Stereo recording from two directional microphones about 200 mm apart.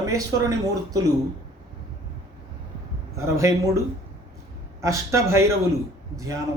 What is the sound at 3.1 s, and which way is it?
Speech, 15° right (ahead or behind).